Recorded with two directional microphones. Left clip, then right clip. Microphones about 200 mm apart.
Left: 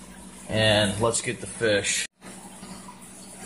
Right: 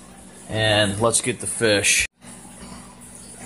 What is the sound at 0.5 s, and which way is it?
Speech, 25° right (ahead or behind).